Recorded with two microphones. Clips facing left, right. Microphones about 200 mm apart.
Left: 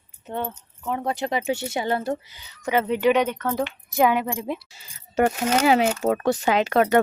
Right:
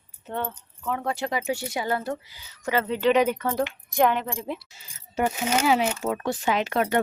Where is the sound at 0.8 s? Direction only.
20° left (ahead or behind).